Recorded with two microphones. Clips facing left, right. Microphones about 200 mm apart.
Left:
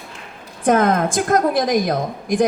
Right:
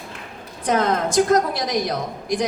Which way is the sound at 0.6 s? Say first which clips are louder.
Left 4 dB; 50° left (ahead or behind).